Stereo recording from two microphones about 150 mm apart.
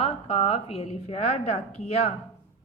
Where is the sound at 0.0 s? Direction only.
40° left (ahead or behind).